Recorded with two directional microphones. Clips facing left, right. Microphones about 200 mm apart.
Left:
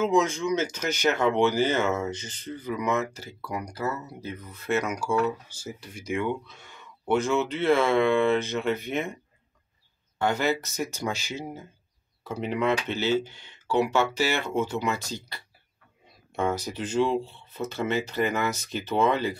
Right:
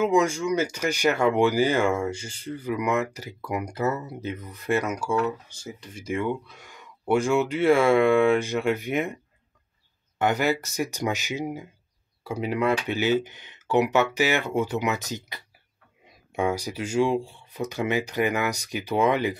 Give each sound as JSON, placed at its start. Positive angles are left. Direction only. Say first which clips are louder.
{"t": 0.0, "sound": "speech", "louder": "right 2 dB", "side_deg": -10}
{"t": 4.6, "sound": "speech", "louder": "right 2 dB", "side_deg": -10}
{"t": 5.6, "sound": "speech", "louder": "even", "side_deg": 5}
{"t": 10.1, "sound": "speech", "louder": "right 2 dB", "side_deg": -20}